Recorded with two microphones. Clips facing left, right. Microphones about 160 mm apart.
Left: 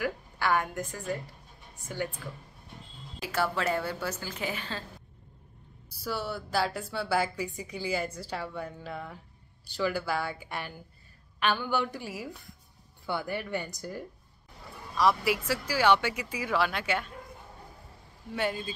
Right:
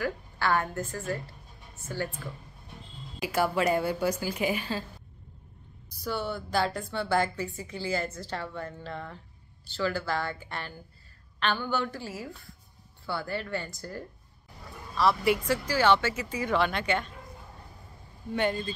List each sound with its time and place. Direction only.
0.0 s a woman's voice: 15° left (ahead or behind)
3.2 s a woman's voice: 15° right (ahead or behind)
5.9 s a woman's voice: 5° left (ahead or behind)
18.3 s speech: 5° left (ahead or behind)